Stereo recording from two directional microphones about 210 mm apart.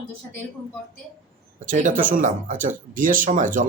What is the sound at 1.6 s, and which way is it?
Speech, 40° right (ahead or behind).